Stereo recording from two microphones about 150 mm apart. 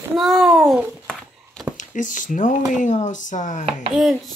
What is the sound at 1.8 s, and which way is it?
Speech, 55° left (ahead or behind).